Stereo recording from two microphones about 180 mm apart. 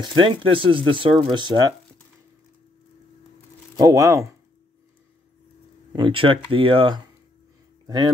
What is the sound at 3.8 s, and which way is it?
Speech, 20° right (ahead or behind).